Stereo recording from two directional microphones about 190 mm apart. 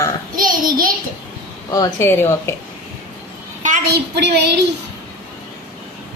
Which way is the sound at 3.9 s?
60° right (ahead or behind).